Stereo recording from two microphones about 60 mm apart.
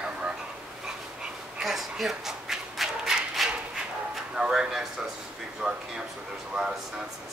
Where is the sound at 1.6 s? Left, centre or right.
Centre.